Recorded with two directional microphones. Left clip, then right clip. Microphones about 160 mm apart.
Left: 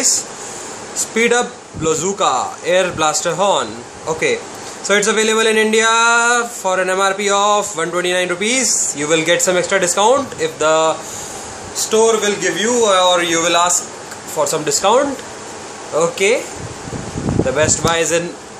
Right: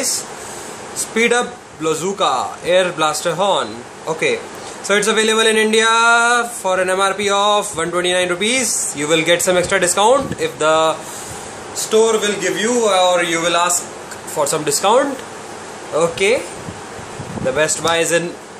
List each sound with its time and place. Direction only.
0.9 s speech: 5° left (ahead or behind)
11.7 s a man's voice: 20° left (ahead or behind); by 16.3 s centre (ahead or behind)
17.5 s speech: centre (ahead or behind)